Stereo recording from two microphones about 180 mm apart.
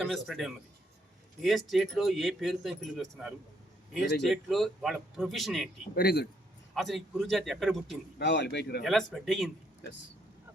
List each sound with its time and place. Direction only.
0.0 s speech: centre (ahead or behind)
5.9 s a man's voice: 60° left (ahead or behind)
6.7 s speech: centre (ahead or behind)
8.2 s speech: 75° left (ahead or behind)
8.8 s speech: centre (ahead or behind)